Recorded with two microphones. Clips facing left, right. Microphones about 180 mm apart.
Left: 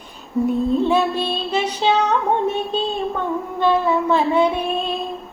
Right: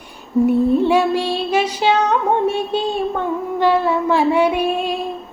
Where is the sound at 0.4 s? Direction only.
10° right (ahead or behind).